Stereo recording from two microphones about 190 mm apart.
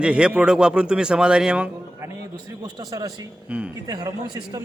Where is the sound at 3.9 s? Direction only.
20° right (ahead or behind).